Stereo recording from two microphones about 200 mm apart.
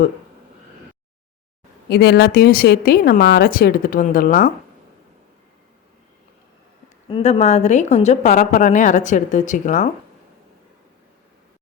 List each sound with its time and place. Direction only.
1.9 s a woman's voice: 55° left (ahead or behind)
7.1 s a woman's voice: 30° left (ahead or behind)